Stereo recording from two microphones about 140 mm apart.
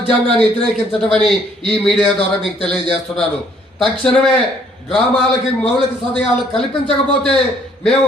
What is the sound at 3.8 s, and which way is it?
Speech, 40° left (ahead or behind).